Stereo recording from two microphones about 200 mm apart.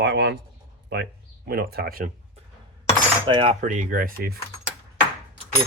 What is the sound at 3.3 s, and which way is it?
Speech, 25° right (ahead or behind).